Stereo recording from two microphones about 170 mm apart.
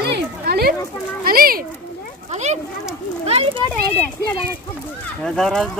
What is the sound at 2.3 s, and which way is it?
A child's voice, 40° right (ahead or behind).